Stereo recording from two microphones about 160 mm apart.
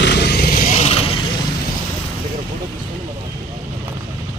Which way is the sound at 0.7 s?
40° left (ahead or behind).